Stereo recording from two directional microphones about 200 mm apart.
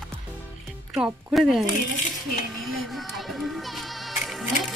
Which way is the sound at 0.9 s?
Centre (ahead or behind).